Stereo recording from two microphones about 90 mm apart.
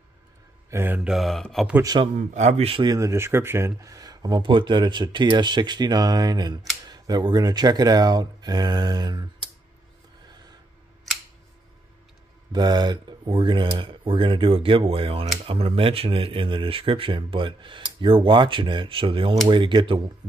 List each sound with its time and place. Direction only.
0.7 s speech: 30° right (ahead or behind)
0.9 s mantra: 10° right (ahead or behind)
1.2 s speech: 5° left (ahead or behind)
2.0 s a man's voice: 90° right
3.0 s speech: 30° right (ahead or behind); by 4.4 s 45° right (ahead or behind)
4.4 s speech: 65° right (ahead or behind)
12.5 s speech: 50° right (ahead or behind)